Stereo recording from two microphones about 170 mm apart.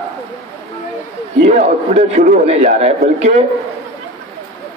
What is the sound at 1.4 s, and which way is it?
A man's voice, 40° right (ahead or behind).